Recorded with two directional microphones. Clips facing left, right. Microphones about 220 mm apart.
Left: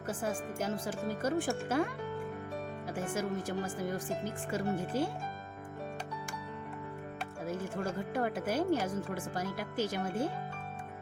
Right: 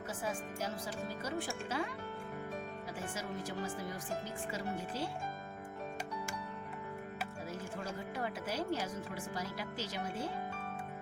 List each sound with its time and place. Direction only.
0.1 s speech: 50° left (ahead or behind)
2.9 s speech: 50° left (ahead or behind)
7.4 s speech: 50° left (ahead or behind)